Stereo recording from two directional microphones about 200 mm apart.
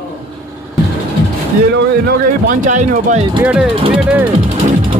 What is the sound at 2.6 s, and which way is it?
Speech, 40° right (ahead or behind).